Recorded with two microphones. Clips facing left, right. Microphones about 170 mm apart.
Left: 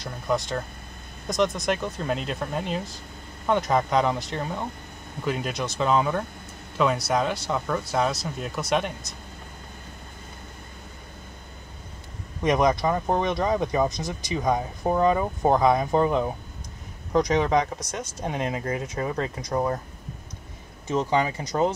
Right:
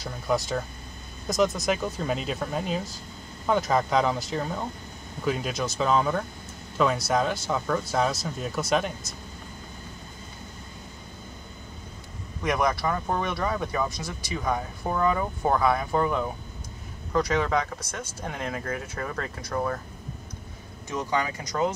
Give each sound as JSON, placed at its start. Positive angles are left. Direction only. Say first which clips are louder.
{"t": 0.0, "sound": "speech", "louder": "even", "side_deg": -5}
{"t": 12.4, "sound": "speech", "louder": "left 4 dB", "side_deg": 20}
{"t": 20.9, "sound": "speech", "louder": "left 5 dB", "side_deg": 25}